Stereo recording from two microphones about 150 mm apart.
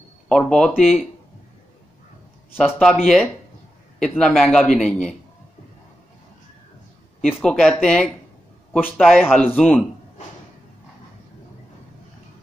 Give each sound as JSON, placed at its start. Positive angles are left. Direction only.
{"t": 0.3, "sound": "speech", "side_deg": 5}
{"t": 2.6, "sound": "speech", "side_deg": 0}
{"t": 7.2, "sound": "speech", "side_deg": 5}
{"t": 9.2, "sound": "speech", "side_deg": 10}